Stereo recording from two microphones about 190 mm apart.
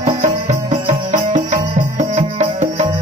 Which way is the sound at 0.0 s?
40° right (ahead or behind).